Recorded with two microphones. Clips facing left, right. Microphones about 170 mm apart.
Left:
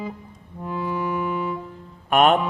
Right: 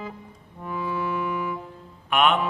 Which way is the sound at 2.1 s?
45° left (ahead or behind).